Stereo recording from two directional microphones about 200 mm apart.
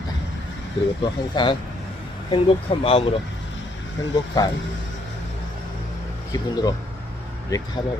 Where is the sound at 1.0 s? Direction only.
25° left (ahead or behind).